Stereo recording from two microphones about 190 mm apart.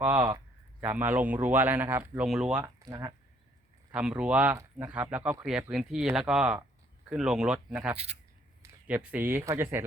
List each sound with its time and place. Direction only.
0.0 s speech: 10° right (ahead or behind)
2.6 s speech: 15° right (ahead or behind)
3.9 s speech: 5° right (ahead or behind)
7.9 s speech: 35° right (ahead or behind)
9.0 s speech: 10° right (ahead or behind)